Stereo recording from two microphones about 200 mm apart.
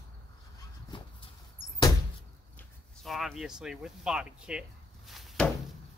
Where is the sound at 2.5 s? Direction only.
Centre (ahead or behind).